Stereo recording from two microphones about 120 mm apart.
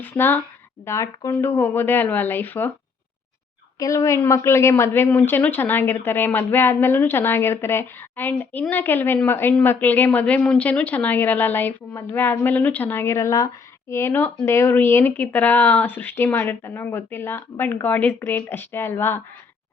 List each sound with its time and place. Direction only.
0.0 s a woman's voice: 15° left (ahead or behind)
3.8 s a woman's voice: 25° left (ahead or behind)